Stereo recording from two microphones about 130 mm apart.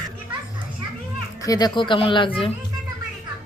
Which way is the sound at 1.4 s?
30° left (ahead or behind).